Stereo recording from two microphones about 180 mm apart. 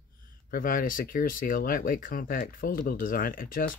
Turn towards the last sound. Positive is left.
turn(degrees=50)  # may be behind; listen again after turning